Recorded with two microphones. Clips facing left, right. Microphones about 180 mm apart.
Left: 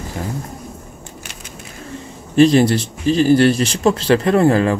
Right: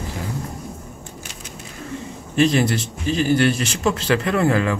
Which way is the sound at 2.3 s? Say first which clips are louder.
Left 6 dB; 35° left (ahead or behind).